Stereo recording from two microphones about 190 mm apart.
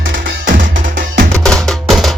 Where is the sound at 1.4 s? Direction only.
Centre (ahead or behind).